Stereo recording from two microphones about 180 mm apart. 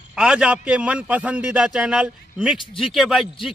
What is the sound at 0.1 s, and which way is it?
A man's voice, 5° right (ahead or behind).